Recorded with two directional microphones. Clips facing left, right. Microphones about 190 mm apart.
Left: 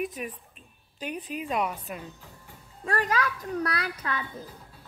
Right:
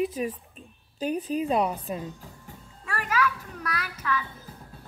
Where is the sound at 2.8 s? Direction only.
35° left (ahead or behind).